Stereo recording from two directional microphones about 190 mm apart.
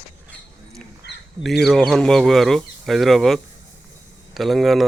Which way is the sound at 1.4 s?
Centre (ahead or behind).